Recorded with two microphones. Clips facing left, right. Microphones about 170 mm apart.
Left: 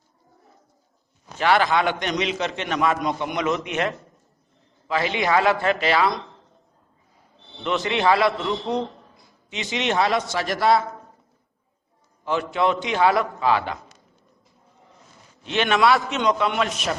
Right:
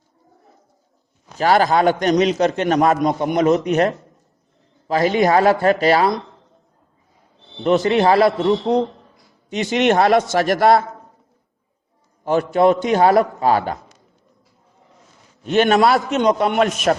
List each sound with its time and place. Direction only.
1.4 s a man's voice: 40° right (ahead or behind)
7.9 s a man's voice: 40° right (ahead or behind)
8.6 s speech: 20° right (ahead or behind)
9.5 s a man's voice: 45° right (ahead or behind)
12.2 s a man's voice: 40° right (ahead or behind)
15.4 s a man's voice: 40° right (ahead or behind)